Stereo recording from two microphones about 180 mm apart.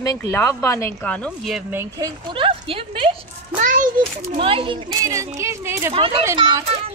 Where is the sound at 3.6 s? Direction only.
45° right (ahead or behind).